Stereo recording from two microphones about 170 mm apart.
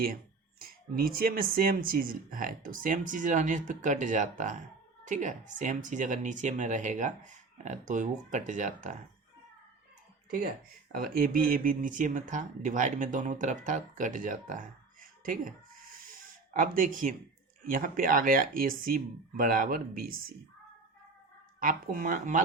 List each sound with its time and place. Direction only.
0.6 s speech: 60° right (ahead or behind)
10.2 s speech: 55° right (ahead or behind)
15.0 s music: 55° right (ahead or behind)
16.0 s a sound: 55° right (ahead or behind)
17.6 s speech: 55° right (ahead or behind)
21.6 s speech: 55° right (ahead or behind)